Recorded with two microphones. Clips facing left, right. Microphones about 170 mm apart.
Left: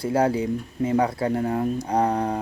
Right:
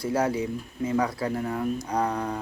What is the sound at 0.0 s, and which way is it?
Speech, 30° left (ahead or behind).